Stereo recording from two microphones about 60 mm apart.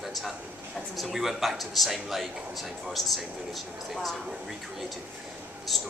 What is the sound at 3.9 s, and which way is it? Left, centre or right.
Speech, centre.